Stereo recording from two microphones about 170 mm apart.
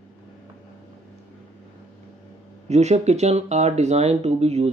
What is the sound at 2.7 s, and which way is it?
Speech, 40° right (ahead or behind).